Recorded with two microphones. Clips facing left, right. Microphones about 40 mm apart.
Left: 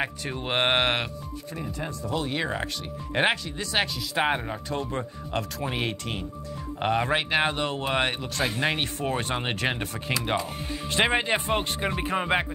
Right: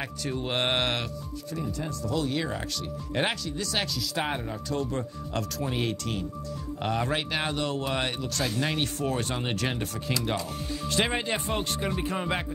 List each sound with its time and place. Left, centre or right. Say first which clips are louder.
0.0 s speech: left 2 dB; left